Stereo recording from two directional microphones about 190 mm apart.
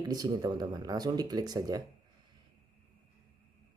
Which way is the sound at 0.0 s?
20° right (ahead or behind).